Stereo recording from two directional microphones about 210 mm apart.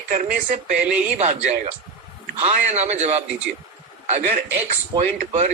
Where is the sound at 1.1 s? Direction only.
30° right (ahead or behind).